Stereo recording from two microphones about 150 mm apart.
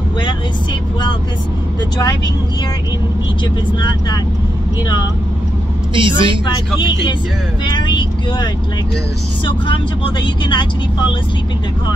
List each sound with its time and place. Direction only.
2.0 s speech: 25° left (ahead or behind)
5.9 s a woman's voice: 35° right (ahead or behind)
6.4 s speech: 30° left (ahead or behind)
9.7 s speech: 35° left (ahead or behind)